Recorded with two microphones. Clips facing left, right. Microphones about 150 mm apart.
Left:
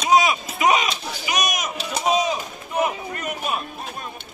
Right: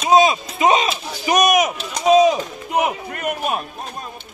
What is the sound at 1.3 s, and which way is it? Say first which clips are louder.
Speech: right 10 dB; 55° right (ahead or behind).